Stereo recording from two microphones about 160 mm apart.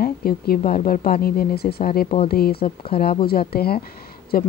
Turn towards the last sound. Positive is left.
turn(degrees=70)  # may be behind; listen again after turning